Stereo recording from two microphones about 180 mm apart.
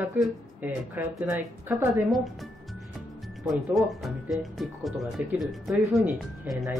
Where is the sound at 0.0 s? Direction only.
10° right (ahead or behind).